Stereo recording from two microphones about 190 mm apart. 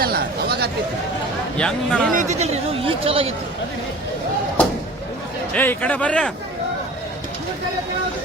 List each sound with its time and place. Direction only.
0.0 s a sound: 55° right (ahead or behind)
1.5 s speech: 5° left (ahead or behind)
2.1 s speech: 35° right (ahead or behind)
5.5 s speech: 10° left (ahead or behind)